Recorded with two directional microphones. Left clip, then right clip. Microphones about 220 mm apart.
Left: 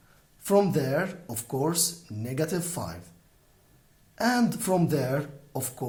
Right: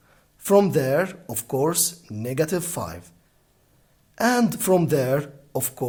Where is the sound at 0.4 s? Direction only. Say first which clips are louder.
Right 5 dB; 45° right (ahead or behind).